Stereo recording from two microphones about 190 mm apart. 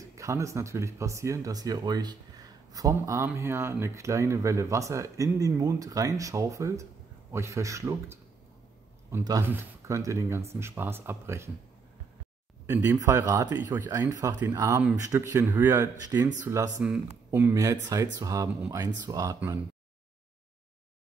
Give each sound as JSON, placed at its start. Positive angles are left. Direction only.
{"t": 0.0, "sound": "speech", "side_deg": -15}
{"t": 12.6, "sound": "speech", "side_deg": -15}